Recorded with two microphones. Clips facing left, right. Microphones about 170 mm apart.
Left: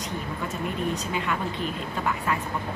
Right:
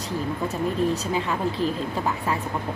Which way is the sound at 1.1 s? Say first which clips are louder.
Right 3 dB; 35° right (ahead or behind).